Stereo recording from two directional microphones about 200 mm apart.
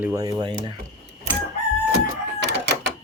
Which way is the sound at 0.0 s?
15° right (ahead or behind).